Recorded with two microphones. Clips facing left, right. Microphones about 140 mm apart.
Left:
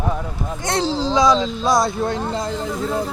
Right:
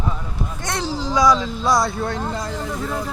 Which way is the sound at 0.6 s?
30° left (ahead or behind).